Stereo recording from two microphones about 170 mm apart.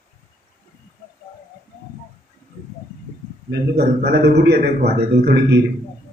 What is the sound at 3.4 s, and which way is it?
A man's voice, 70° right (ahead or behind).